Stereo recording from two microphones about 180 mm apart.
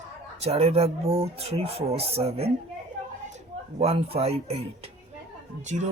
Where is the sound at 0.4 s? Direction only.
35° right (ahead or behind).